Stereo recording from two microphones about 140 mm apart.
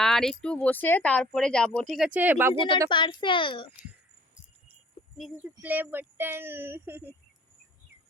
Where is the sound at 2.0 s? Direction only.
10° right (ahead or behind).